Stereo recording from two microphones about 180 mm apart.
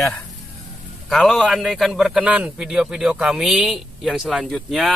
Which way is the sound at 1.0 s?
Centre (ahead or behind).